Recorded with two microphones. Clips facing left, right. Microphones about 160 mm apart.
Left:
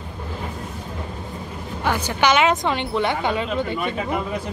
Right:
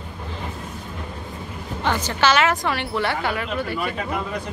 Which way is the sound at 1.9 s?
10° left (ahead or behind).